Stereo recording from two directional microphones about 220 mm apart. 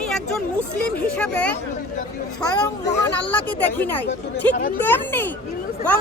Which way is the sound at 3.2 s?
5° left (ahead or behind).